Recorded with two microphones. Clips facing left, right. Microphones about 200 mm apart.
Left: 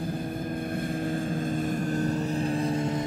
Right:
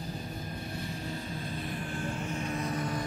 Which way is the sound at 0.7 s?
50° left (ahead or behind).